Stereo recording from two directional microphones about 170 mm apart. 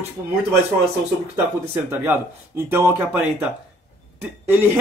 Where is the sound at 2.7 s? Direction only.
10° right (ahead or behind).